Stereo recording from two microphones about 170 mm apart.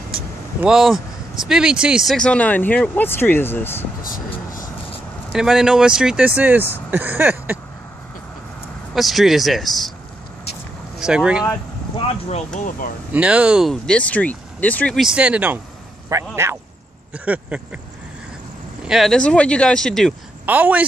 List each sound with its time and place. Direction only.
0.6 s speech: 5° right (ahead or behind); by 3.8 s 15° left (ahead or behind)
4.0 s vehicle: 55° left (ahead or behind)
5.3 s speech: 5° right (ahead or behind)
8.9 s speech: centre (ahead or behind)
11.0 s speech: 5° right (ahead or behind)
12.1 s speech: 40° left (ahead or behind)
13.1 s speech: 5° right (ahead or behind); by 15.0 s 10° left (ahead or behind)
15.0 s speech: 5° right (ahead or behind)
18.9 s speech: centre (ahead or behind)
20.4 s speech: 10° right (ahead or behind)